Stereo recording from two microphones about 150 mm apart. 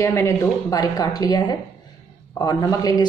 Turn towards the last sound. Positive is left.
turn(degrees=25)  # may be behind; listen again after turning